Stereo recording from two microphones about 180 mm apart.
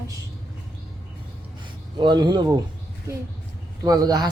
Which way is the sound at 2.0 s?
25° right (ahead or behind).